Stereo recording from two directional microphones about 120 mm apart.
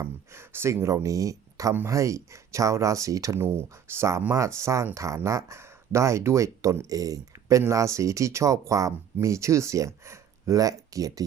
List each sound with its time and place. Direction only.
0.0 s speech: 20° right (ahead or behind)